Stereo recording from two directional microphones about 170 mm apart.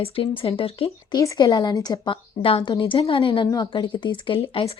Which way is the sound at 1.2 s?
20° left (ahead or behind).